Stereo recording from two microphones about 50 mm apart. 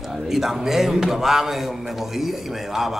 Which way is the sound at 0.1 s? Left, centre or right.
Centre.